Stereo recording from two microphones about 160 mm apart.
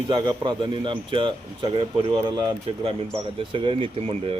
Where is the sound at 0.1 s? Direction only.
30° right (ahead or behind).